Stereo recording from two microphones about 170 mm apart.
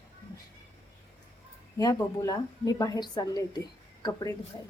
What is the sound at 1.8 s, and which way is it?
A woman's voice, 20° left (ahead or behind).